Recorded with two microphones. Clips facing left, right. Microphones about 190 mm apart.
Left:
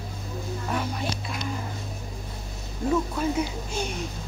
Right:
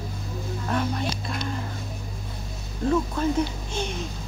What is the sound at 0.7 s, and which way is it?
Speech, 5° left (ahead or behind).